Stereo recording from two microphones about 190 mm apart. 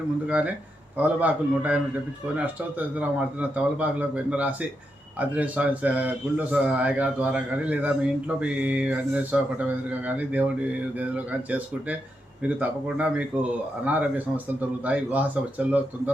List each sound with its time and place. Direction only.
0.3 s a man's voice: 10° right (ahead or behind)